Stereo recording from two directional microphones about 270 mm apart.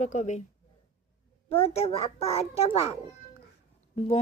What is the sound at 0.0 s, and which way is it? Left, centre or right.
Speech, left.